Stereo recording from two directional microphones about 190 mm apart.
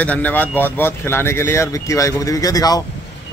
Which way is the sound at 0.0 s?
10° left (ahead or behind).